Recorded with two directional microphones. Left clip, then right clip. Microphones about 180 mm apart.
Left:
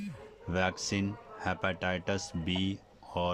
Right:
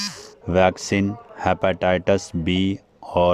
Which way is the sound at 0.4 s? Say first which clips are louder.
Right 14 dB; 45° right (ahead or behind).